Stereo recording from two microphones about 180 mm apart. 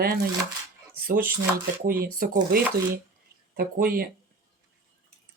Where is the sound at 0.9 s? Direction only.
55° right (ahead or behind).